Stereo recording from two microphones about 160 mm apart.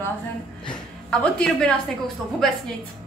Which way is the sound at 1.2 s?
5° left (ahead or behind).